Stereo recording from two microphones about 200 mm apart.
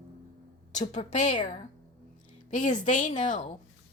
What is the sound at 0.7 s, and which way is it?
Speech, 35° left (ahead or behind).